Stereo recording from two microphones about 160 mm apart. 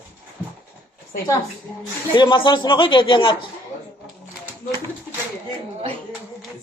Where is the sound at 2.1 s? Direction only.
30° left (ahead or behind).